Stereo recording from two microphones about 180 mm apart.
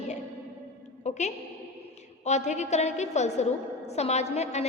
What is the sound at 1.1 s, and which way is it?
A woman's voice, 40° left (ahead or behind).